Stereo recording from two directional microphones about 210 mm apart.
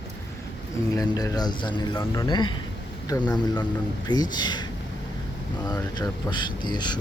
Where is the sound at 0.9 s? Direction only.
15° left (ahead or behind).